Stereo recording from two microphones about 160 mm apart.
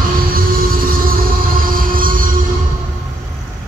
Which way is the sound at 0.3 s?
60° right (ahead or behind).